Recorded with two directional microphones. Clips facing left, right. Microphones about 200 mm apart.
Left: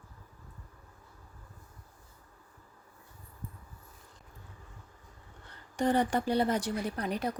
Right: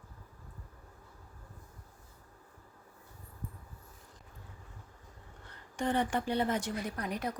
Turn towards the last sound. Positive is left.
turn(degrees=30)  # may be behind; listen again after turning